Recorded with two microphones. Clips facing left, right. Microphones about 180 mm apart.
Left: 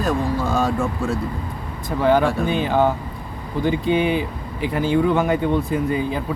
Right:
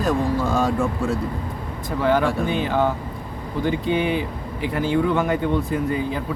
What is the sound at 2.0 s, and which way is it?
Speech, 20° left (ahead or behind).